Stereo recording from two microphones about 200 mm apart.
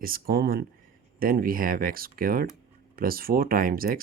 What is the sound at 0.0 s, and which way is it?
Speech, 50° right (ahead or behind).